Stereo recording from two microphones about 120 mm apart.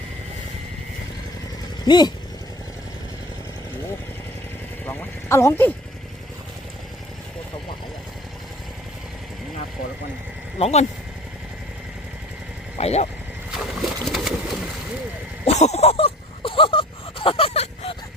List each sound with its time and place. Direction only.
1.8 s speech: 35° left (ahead or behind)
4.9 s a sound: 25° left (ahead or behind)
10.6 s speech: 60° left (ahead or behind)
12.7 s speech: 65° left (ahead or behind)
13.5 s pigeon: centre (ahead or behind)
15.4 s a sound: 65° left (ahead or behind)